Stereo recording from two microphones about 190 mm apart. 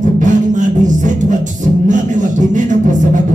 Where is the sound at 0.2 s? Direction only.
40° right (ahead or behind).